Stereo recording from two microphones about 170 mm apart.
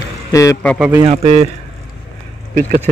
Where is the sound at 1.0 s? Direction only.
40° right (ahead or behind).